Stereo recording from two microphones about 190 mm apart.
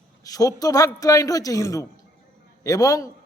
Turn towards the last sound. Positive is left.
turn(degrees=20)  # may be behind; listen again after turning